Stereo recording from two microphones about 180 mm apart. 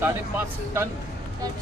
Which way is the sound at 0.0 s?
15° right (ahead or behind).